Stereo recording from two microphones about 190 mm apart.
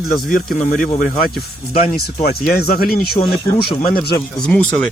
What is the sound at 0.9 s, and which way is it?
Speech, 30° left (ahead or behind).